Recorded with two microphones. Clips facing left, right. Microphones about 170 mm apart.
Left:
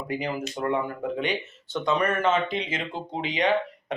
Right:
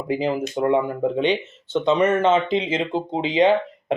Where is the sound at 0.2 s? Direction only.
25° right (ahead or behind).